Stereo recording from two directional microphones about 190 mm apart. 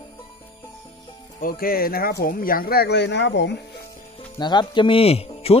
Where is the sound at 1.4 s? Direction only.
50° left (ahead or behind); by 3.6 s 65° left (ahead or behind).